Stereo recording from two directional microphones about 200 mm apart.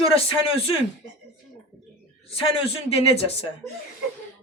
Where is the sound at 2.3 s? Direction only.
30° left (ahead or behind).